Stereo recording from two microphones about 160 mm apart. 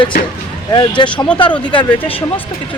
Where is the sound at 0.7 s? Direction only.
30° left (ahead or behind).